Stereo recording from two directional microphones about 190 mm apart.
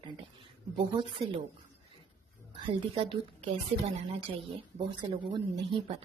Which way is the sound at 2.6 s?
30° right (ahead or behind).